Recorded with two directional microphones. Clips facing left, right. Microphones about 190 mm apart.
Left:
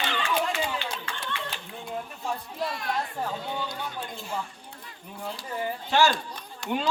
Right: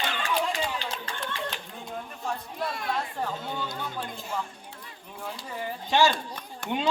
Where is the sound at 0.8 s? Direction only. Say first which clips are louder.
Even; 35° right (ahead or behind).